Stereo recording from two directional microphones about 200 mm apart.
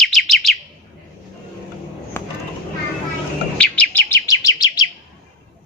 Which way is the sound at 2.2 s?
10° left (ahead or behind).